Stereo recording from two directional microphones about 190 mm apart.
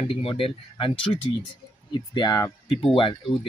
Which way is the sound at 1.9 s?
25° left (ahead or behind).